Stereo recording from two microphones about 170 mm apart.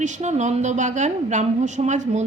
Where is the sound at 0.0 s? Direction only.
45° right (ahead or behind).